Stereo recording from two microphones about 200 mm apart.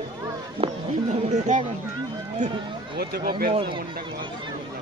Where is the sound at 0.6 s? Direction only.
30° right (ahead or behind).